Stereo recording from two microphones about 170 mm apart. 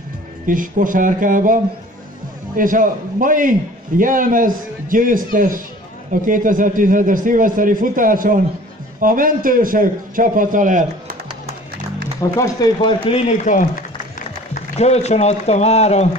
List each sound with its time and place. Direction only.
0.5 s a man's voice: 50° right (ahead or behind)
12.2 s speech: 20° left (ahead or behind)
13.2 s speech: 50° left (ahead or behind)